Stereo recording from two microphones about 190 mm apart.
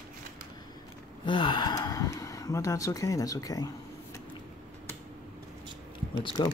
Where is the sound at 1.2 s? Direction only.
25° left (ahead or behind).